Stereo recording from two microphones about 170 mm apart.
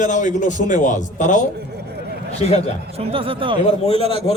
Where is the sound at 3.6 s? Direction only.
35° left (ahead or behind).